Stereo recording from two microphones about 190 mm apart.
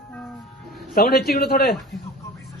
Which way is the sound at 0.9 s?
55° left (ahead or behind).